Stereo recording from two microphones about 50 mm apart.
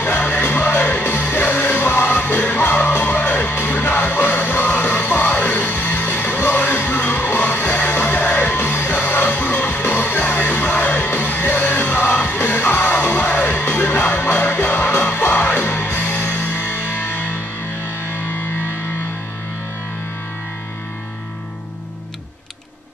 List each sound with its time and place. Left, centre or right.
0.2 s music: left
8.9 s music: left